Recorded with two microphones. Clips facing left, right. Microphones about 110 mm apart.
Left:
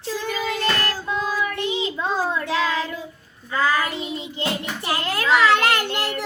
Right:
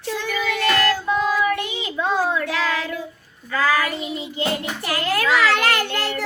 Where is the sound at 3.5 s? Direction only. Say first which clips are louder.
Right 1 dB; 25° left (ahead or behind).